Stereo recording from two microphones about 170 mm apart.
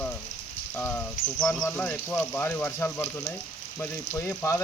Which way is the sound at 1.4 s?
5° left (ahead or behind).